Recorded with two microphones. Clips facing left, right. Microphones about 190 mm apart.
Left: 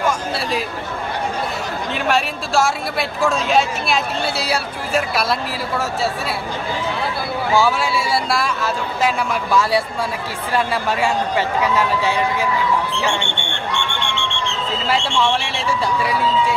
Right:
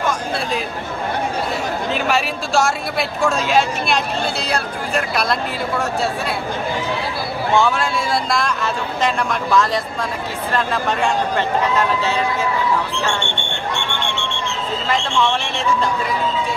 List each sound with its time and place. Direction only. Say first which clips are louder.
2.0 s speech: left 3 dB; centre (ahead or behind)
7.5 s a man's voice: even; 5° left (ahead or behind)
14.9 s a man's voice: even; 10° left (ahead or behind)